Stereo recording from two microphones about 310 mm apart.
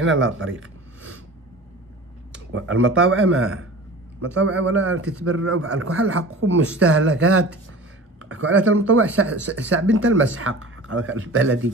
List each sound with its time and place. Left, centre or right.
0.0 s speech: right
2.5 s a man's voice: right